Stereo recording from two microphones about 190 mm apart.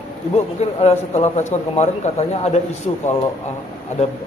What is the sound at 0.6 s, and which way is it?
A man's voice, 35° left (ahead or behind).